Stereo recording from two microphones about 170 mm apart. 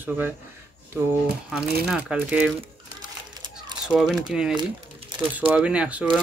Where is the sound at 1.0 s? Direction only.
10° right (ahead or behind).